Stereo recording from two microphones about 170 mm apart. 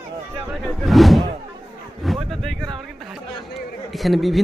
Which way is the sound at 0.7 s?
Centre (ahead or behind).